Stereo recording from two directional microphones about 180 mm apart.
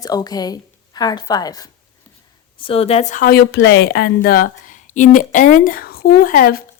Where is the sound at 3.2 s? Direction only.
65° left (ahead or behind).